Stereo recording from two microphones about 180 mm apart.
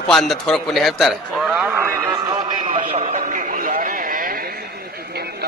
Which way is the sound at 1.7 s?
15° right (ahead or behind).